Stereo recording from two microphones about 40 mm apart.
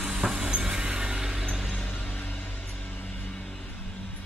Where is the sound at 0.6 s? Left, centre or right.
Right.